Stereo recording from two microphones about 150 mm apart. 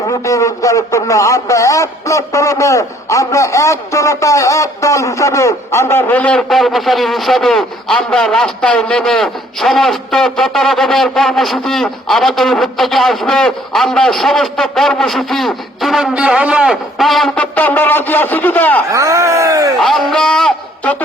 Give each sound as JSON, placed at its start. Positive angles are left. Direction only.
{"t": 0.1, "sound": "speech", "side_deg": 20}
{"t": 18.9, "sound": "speech", "side_deg": -20}
{"t": 19.8, "sound": "a man's voice", "side_deg": 0}